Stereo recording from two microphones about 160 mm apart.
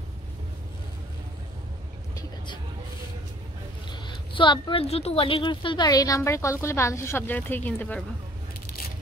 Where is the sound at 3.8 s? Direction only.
30° left (ahead or behind); by 8.0 s 10° left (ahead or behind).